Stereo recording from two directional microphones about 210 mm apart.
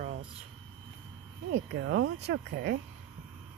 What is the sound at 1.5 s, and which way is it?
Speech, 55° right (ahead or behind).